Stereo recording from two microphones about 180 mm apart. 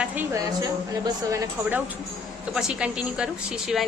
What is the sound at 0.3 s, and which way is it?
Speech, 20° right (ahead or behind).